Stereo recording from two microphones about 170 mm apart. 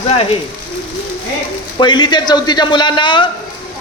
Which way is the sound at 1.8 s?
25° left (ahead or behind).